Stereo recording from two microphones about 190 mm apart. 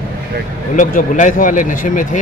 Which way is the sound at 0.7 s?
45° left (ahead or behind).